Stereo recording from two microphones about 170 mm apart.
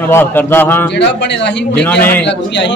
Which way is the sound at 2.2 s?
90° left.